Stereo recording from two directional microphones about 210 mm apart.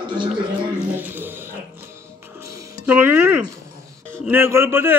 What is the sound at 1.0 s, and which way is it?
Speech, 10° right (ahead or behind).